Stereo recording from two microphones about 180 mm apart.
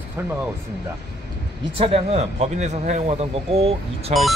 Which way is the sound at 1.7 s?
35° right (ahead or behind).